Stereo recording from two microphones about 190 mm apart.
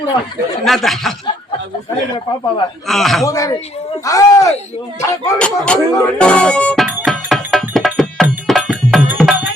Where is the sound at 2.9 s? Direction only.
Centre (ahead or behind).